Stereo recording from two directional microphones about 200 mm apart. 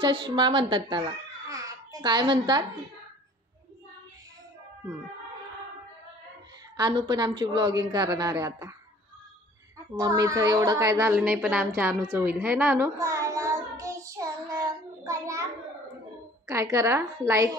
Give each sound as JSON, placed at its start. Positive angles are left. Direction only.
{"t": 0.0, "sound": "a child's voice", "side_deg": -25}
{"t": 6.8, "sound": "speech", "side_deg": -20}
{"t": 9.9, "sound": "a woman's voice", "side_deg": -15}
{"t": 15.0, "sound": "a sound", "side_deg": -15}
{"t": 16.4, "sound": "a woman's voice", "side_deg": -15}